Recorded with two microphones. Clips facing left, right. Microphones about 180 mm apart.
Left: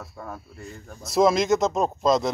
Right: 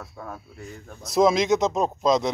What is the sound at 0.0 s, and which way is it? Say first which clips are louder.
Speech: even; centre (ahead or behind).